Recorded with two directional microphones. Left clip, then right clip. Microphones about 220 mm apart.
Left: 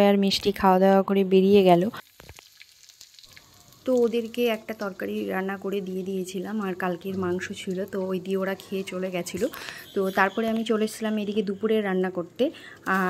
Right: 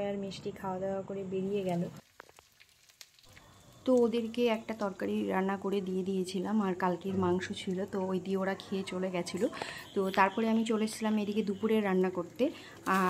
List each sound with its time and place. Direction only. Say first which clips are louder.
0.0 s speech: left 16 dB; 45° left (ahead or behind)
4.0 s speech: left 6 dB; 10° left (ahead or behind)